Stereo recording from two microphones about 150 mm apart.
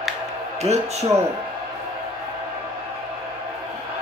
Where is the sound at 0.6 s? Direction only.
45° right (ahead or behind).